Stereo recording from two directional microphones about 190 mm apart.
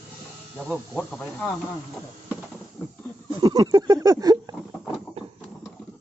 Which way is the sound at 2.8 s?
10° left (ahead or behind).